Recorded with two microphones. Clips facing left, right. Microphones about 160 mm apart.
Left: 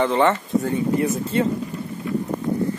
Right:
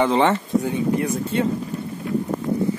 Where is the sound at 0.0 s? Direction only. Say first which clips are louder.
Right 1 dB; 20° right (ahead or behind).